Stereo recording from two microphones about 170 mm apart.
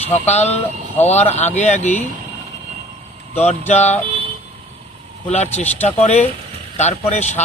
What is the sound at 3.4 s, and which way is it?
Speech, 40° left (ahead or behind).